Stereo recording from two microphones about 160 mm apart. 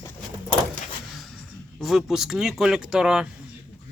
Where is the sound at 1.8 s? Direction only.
Centre (ahead or behind).